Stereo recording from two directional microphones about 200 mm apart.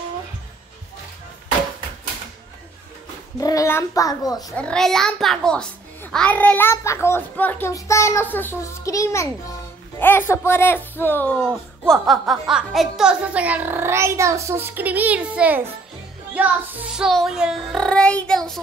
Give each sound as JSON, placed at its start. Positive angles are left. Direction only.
{"t": 3.3, "sound": "a child's voice", "side_deg": 15}
{"t": 4.5, "sound": "a child's voice", "side_deg": 5}